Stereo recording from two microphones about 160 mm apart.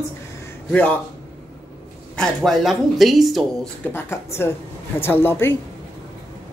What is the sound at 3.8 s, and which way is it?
Speech, 15° left (ahead or behind).